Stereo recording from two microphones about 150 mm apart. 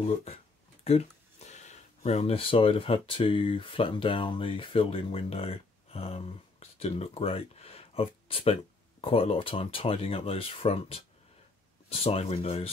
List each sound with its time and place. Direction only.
0.0 s speech: 45° left (ahead or behind)